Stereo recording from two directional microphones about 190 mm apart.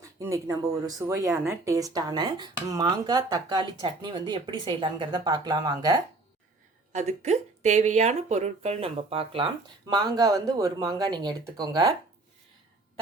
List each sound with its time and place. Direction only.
0.0 s speech: 15° right (ahead or behind)
6.9 s speech: 35° right (ahead or behind); by 11.9 s 20° right (ahead or behind)